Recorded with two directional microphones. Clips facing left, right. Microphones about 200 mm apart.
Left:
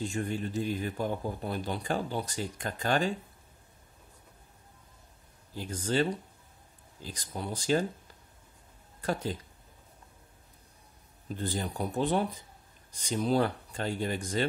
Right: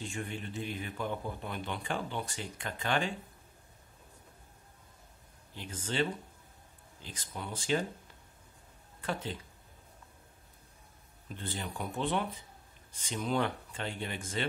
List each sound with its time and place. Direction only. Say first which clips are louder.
0.0 s speech: left 7 dB; 40° left (ahead or behind)
5.5 s speech: left 7 dB; 40° left (ahead or behind)
9.0 s speech: left 5 dB; 40° left (ahead or behind)
11.2 s speech: left 6 dB; 40° left (ahead or behind)